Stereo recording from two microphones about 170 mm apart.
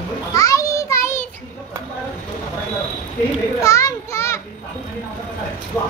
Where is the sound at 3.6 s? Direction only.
20° left (ahead or behind).